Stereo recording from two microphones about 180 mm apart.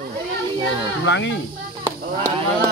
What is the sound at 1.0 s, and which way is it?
Speech, 90° left.